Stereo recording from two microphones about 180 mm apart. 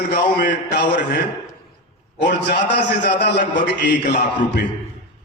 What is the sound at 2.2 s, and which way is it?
A man's voice, 70° left (ahead or behind).